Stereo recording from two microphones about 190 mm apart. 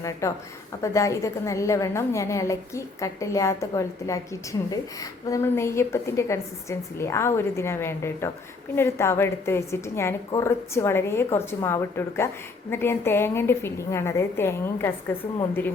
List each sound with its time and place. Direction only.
0.0 s a woman's voice: 15° left (ahead or behind)
5.3 s a woman's voice: 15° left (ahead or behind)